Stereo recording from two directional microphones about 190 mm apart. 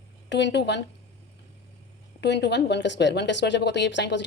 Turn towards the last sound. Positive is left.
turn(degrees=70)  # may be behind; listen again after turning